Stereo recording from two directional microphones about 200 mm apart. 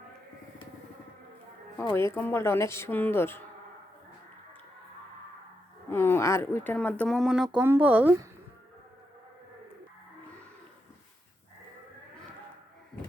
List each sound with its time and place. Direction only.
1.9 s speech: 10° left (ahead or behind)
5.9 s speech: 10° left (ahead or behind); by 8.3 s 10° right (ahead or behind)